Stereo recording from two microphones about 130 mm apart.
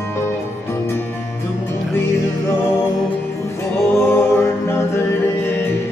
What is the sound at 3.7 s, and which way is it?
Music, 20° left (ahead or behind).